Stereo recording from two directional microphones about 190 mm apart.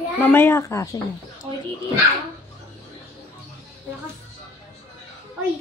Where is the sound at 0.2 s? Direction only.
10° left (ahead or behind).